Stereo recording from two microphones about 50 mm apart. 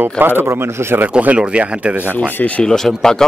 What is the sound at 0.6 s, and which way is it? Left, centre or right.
Speech, right.